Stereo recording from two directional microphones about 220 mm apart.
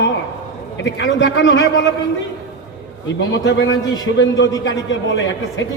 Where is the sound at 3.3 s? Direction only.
55° left (ahead or behind).